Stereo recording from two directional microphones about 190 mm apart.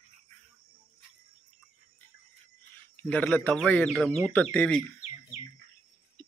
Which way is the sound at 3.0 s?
5° left (ahead or behind).